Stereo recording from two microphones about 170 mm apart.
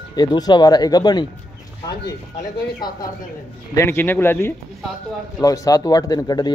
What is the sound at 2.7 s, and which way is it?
Speech, 25° left (ahead or behind).